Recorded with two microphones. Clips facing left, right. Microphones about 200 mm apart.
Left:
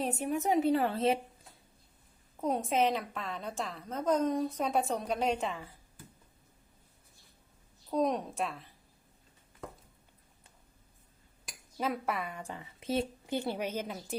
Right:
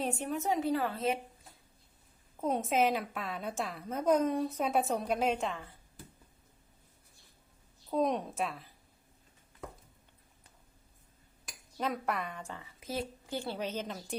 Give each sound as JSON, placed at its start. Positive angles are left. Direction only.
{"t": 0.2, "sound": "a woman's voice", "side_deg": 15}
{"t": 2.4, "sound": "a woman's voice", "side_deg": 0}
{"t": 7.9, "sound": "a woman's voice", "side_deg": 0}
{"t": 11.8, "sound": "a woman's voice", "side_deg": 5}
{"t": 12.8, "sound": "a woman's voice", "side_deg": 25}